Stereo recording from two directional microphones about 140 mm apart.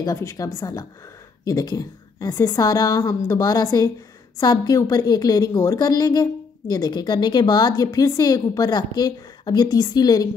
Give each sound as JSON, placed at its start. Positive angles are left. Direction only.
{"t": 0.0, "sound": "a woman's voice", "side_deg": 20}